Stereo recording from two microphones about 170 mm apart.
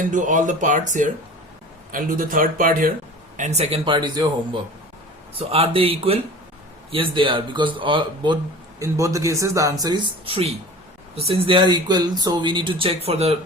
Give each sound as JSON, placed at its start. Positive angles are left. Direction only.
{"t": 0.1, "sound": "speech", "side_deg": -50}
{"t": 3.3, "sound": "speech", "side_deg": -45}
{"t": 5.4, "sound": "speech", "side_deg": -35}